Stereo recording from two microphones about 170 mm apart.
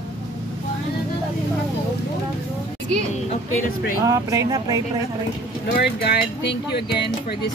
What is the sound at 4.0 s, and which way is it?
Speech, 20° right (ahead or behind).